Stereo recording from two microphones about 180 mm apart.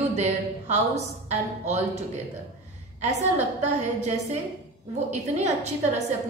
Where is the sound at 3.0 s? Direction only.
40° right (ahead or behind).